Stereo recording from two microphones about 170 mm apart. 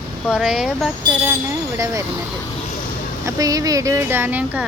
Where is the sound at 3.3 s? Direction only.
20° right (ahead or behind).